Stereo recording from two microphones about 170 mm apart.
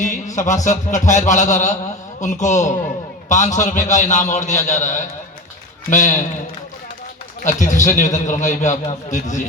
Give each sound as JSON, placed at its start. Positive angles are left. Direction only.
{"t": 0.3, "sound": "a man's voice", "side_deg": 45}
{"t": 7.4, "sound": "a man's voice", "side_deg": 45}